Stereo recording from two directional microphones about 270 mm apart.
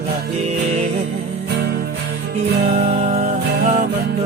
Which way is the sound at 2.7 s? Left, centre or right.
Right.